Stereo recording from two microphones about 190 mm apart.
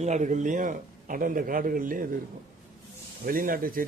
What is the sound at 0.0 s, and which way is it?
A man's voice, 40° right (ahead or behind).